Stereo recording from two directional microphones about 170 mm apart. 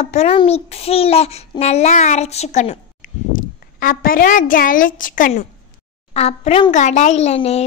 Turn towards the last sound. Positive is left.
turn(degrees=40)  # may be behind; listen again after turning